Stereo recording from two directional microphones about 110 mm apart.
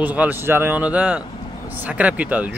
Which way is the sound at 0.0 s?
15° right (ahead or behind).